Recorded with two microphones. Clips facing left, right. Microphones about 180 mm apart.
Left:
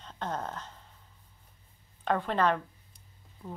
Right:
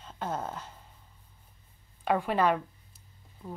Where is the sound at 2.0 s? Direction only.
10° right (ahead or behind).